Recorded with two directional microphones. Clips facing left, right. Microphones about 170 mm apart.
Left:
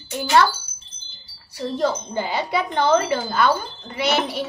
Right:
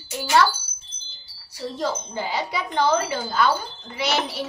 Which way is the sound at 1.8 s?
55° left (ahead or behind).